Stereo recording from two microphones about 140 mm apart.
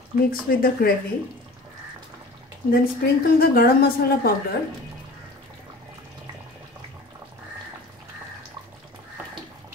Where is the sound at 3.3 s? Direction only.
90° left.